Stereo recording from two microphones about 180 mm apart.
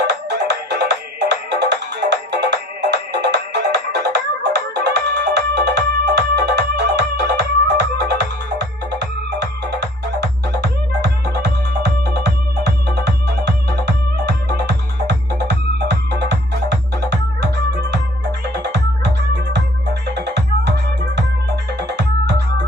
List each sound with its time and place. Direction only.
0.1 s music: 70° right (ahead or behind)